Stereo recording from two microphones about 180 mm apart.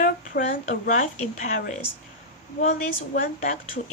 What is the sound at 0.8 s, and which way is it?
A woman's voice, 45° left (ahead or behind).